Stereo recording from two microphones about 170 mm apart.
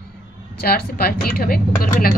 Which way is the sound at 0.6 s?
60° left (ahead or behind).